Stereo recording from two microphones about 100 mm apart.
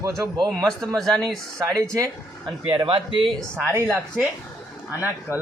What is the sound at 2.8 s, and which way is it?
Speech, 55° right (ahead or behind).